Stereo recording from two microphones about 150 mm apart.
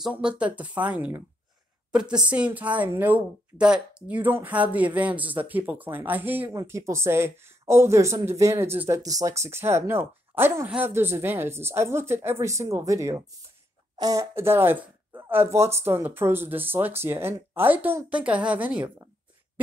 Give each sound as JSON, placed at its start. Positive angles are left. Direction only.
{"t": 0.0, "sound": "a woman's voice", "side_deg": -5}